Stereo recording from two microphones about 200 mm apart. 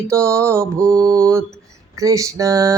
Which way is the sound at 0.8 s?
5° left (ahead or behind).